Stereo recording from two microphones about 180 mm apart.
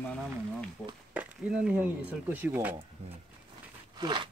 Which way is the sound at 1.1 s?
5° right (ahead or behind).